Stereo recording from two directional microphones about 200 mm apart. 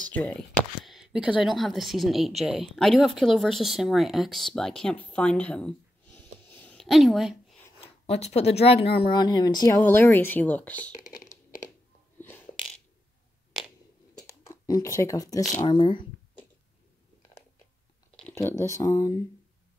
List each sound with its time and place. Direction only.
0.1 s a sound: 5° left (ahead or behind)
1.4 s a woman's voice: centre (ahead or behind)
7.8 s speech: 30° left (ahead or behind); by 10.8 s 10° left (ahead or behind)
12.2 s a sound: 10° left (ahead or behind)
14.4 s speech: 15° left (ahead or behind)
18.7 s speech: 15° left (ahead or behind)